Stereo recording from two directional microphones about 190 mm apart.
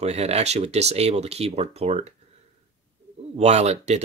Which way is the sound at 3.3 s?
35° right (ahead or behind).